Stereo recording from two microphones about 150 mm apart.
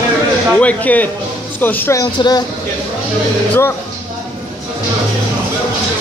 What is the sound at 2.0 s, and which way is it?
Speech, 25° left (ahead or behind).